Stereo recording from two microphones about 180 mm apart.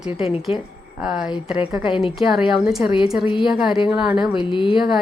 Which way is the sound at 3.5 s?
Centre (ahead or behind).